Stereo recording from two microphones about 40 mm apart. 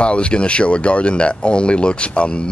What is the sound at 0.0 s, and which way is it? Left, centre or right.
Speech, left.